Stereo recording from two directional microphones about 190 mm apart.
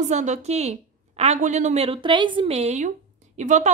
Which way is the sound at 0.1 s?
40° right (ahead or behind).